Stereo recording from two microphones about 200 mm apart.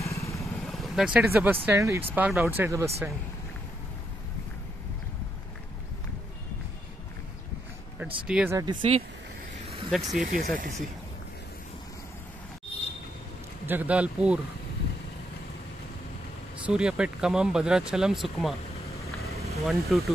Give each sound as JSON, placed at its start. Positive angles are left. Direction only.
{"t": 0.0, "sound": "vehicle", "side_deg": 15}
{"t": 0.5, "sound": "vehicle", "side_deg": 0}
{"t": 1.7, "sound": "speech", "side_deg": -15}
{"t": 8.3, "sound": "speech", "side_deg": -5}
{"t": 8.5, "sound": "speech", "side_deg": -20}
{"t": 9.8, "sound": "speech", "side_deg": 0}
{"t": 10.1, "sound": "speech", "side_deg": -40}
{"t": 13.7, "sound": "speech", "side_deg": -10}
{"t": 16.6, "sound": "speech", "side_deg": -5}
{"t": 19.5, "sound": "speech", "side_deg": 0}